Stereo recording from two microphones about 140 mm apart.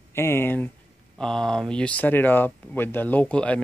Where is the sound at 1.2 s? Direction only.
5° left (ahead or behind).